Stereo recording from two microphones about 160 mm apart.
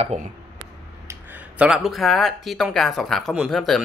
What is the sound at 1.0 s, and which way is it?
Speech, 10° right (ahead or behind).